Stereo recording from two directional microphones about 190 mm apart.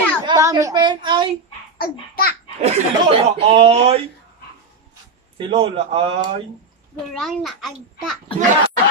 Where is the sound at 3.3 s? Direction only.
30° right (ahead or behind).